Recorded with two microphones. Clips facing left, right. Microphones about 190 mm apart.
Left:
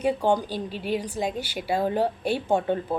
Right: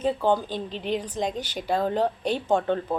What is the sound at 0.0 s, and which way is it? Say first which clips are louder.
Speech: even; 15° left (ahead or behind).